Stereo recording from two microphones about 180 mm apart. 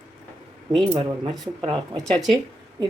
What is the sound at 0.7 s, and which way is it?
Speech, 30° right (ahead or behind).